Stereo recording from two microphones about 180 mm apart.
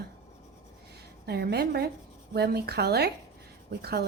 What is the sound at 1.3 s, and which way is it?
Speech, 65° right (ahead or behind).